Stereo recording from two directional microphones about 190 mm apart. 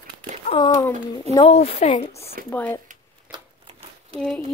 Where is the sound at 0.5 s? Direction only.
25° left (ahead or behind).